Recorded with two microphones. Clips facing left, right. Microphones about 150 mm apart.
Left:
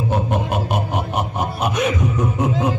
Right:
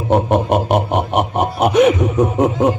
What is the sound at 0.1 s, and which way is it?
Snicker, 65° right (ahead or behind).